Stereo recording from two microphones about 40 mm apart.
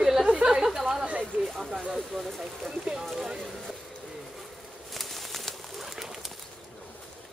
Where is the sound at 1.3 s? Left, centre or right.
Right.